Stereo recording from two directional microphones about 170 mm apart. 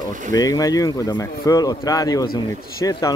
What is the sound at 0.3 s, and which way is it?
Speech, 20° left (ahead or behind).